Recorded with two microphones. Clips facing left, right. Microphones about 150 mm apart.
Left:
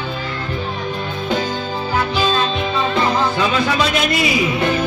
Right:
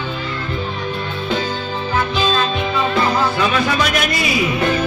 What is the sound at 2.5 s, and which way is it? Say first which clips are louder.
Music: even; 25° left (ahead or behind).